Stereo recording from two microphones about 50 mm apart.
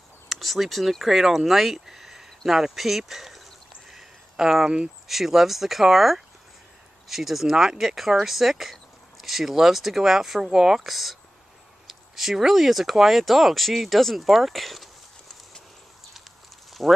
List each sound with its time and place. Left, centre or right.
0.3 s speech: centre
3.9 s a sound: centre
5.0 s speech: centre
16.8 s speech: centre